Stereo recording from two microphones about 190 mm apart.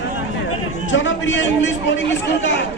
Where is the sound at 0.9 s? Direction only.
75° left (ahead or behind).